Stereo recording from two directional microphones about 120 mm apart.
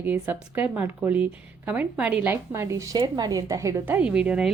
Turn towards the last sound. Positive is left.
turn(degrees=-10)  # may be behind; listen again after turning